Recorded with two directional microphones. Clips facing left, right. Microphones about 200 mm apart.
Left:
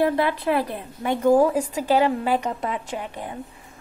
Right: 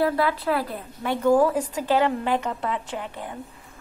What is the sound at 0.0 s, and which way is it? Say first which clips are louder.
A woman's voice: left 2 dB; 20° left (ahead or behind).